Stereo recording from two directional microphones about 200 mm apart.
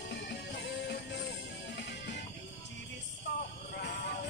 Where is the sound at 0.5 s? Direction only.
60° left (ahead or behind).